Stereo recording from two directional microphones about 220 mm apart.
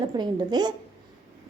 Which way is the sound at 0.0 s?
20° right (ahead or behind).